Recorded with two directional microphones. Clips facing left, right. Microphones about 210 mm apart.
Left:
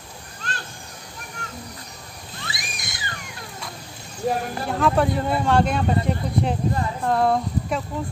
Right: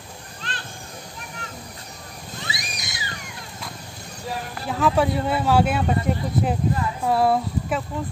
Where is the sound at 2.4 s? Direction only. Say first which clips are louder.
Right 1 dB; 50° left (ahead or behind).